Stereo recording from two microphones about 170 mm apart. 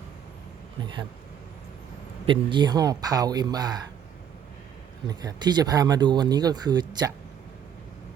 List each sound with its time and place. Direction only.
2.2 s speech: 30° right (ahead or behind)
5.0 s speech: 25° right (ahead or behind)